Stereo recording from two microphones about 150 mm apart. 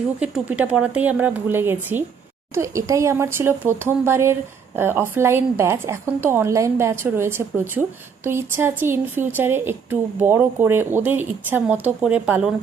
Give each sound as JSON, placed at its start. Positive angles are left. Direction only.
{"t": 0.2, "sound": "a woman's voice", "side_deg": -10}